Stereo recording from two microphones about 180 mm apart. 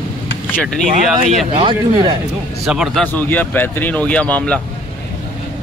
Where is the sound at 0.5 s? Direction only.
5° left (ahead or behind).